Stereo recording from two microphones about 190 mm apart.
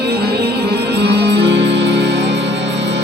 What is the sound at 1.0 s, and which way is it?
Music, 60° right (ahead or behind).